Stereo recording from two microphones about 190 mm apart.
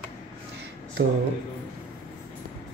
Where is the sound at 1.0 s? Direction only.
70° right (ahead or behind).